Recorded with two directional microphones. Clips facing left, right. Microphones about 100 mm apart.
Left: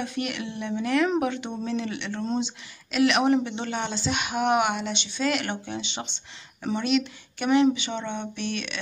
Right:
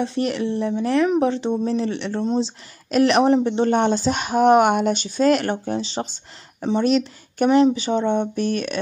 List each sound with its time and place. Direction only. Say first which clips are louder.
0.0 s speech: right 8 dB; 35° right (ahead or behind)